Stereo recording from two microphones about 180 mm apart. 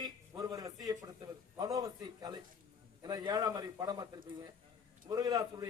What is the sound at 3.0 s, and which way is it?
A man's voice, 20° right (ahead or behind).